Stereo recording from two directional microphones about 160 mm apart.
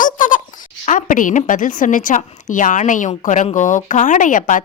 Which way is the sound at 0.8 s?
55° left (ahead or behind).